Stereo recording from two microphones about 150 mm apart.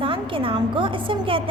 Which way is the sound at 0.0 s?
35° right (ahead or behind).